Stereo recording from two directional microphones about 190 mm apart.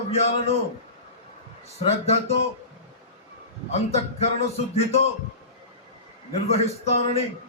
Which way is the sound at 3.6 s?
35° left (ahead or behind).